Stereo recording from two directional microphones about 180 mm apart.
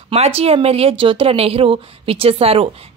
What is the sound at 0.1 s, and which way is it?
Speech, 35° right (ahead or behind).